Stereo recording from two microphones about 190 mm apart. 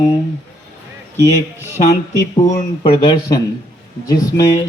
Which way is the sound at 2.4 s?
20° left (ahead or behind).